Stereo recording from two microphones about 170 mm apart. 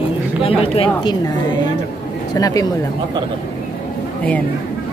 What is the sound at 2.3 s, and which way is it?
Speech, 20° left (ahead or behind).